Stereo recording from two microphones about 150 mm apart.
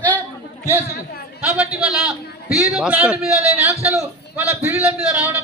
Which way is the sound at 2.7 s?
5° right (ahead or behind).